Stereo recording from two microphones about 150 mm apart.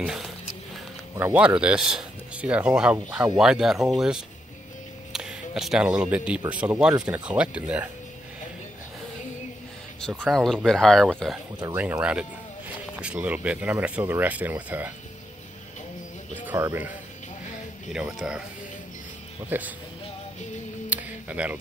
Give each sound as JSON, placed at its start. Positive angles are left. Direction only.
{"t": 0.0, "sound": "speech", "side_deg": -5}
{"t": 10.0, "sound": "speech", "side_deg": 0}
{"t": 11.7, "sound": "speech", "side_deg": -10}
{"t": 16.3, "sound": "music", "side_deg": -10}
{"t": 17.9, "sound": "speech", "side_deg": -5}
{"t": 19.5, "sound": "speech", "side_deg": -10}
{"t": 20.9, "sound": "a sound", "side_deg": -10}